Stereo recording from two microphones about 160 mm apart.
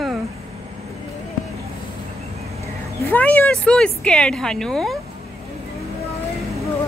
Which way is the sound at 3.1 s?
10° left (ahead or behind).